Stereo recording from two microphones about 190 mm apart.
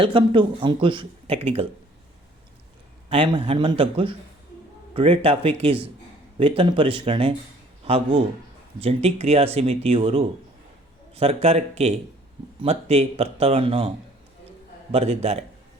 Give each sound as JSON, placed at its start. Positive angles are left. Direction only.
{"t": 0.0, "sound": "speech", "side_deg": -25}
{"t": 3.1, "sound": "speech", "side_deg": -30}
{"t": 14.9, "sound": "speech", "side_deg": -35}